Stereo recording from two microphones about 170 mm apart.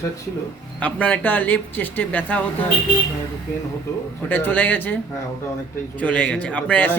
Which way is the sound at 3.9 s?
20° left (ahead or behind).